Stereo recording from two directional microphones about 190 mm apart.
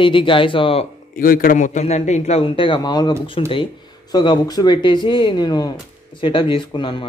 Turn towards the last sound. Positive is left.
turn(degrees=25)  # may be behind; listen again after turning